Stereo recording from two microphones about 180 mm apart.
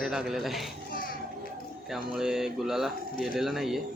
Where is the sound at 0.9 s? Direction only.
50° left (ahead or behind).